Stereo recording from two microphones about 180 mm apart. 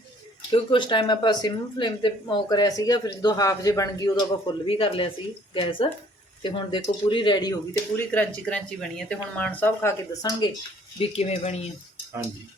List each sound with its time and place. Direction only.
0.5 s speech: 25° left (ahead or behind)
8.1 s speech: 5° left (ahead or behind)
11.0 s speech: 35° left (ahead or behind)